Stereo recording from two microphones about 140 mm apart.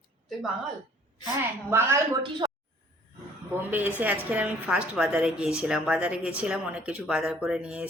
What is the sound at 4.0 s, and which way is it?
A woman's voice, 10° right (ahead or behind).